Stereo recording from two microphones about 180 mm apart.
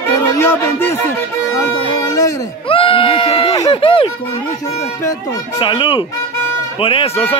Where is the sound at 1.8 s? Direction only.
20° left (ahead or behind).